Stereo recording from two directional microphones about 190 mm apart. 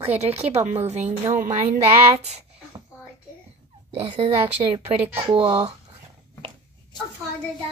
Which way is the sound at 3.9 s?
35° right (ahead or behind).